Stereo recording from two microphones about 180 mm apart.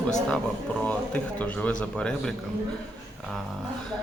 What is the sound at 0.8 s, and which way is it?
A man's voice, 5° left (ahead or behind).